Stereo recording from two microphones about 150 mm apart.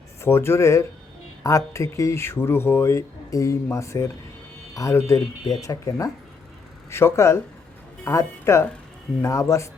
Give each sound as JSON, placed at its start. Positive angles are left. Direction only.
{"t": 0.2, "sound": "speech", "side_deg": 15}